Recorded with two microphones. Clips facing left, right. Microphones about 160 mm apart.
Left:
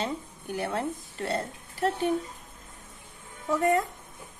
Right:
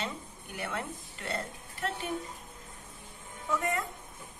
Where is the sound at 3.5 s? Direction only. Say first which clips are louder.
Left 8 dB; 40° left (ahead or behind).